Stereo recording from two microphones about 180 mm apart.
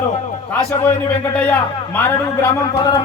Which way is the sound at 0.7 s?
15° left (ahead or behind).